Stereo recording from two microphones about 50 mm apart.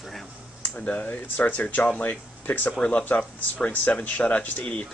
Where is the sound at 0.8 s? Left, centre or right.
Left.